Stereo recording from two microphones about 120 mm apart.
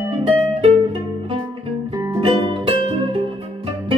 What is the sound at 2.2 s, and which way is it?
Music, 45° right (ahead or behind).